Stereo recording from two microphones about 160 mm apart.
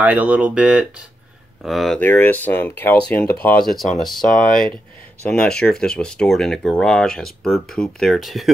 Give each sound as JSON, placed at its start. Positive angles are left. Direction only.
{"t": 0.0, "sound": "speech", "side_deg": -10}
{"t": 2.0, "sound": "speech", "side_deg": 10}
{"t": 4.3, "sound": "speech", "side_deg": 60}
{"t": 5.2, "sound": "speech", "side_deg": 5}